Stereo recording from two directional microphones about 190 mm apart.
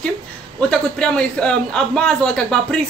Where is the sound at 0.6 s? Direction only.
5° left (ahead or behind).